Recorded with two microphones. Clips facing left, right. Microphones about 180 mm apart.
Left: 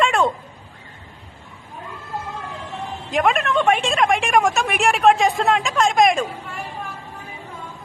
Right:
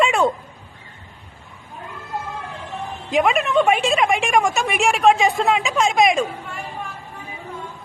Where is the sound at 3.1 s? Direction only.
Centre (ahead or behind).